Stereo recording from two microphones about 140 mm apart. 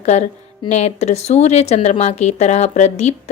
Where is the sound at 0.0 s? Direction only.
55° left (ahead or behind).